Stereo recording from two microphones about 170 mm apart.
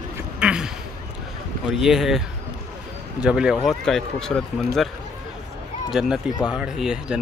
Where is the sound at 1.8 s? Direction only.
Centre (ahead or behind).